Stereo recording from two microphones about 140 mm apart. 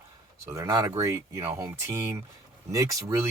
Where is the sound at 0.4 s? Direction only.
20° right (ahead or behind).